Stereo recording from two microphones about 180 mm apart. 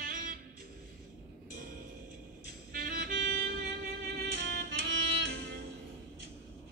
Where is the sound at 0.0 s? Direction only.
50° right (ahead or behind).